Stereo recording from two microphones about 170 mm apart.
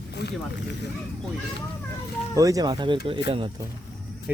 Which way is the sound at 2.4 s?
20° right (ahead or behind).